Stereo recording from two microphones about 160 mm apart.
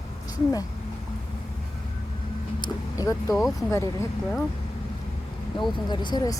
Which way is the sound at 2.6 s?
20° left (ahead or behind).